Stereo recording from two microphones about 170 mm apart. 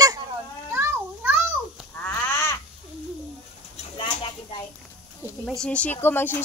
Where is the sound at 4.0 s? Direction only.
30° left (ahead or behind).